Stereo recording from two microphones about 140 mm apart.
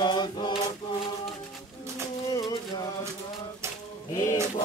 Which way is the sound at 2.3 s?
25° left (ahead or behind).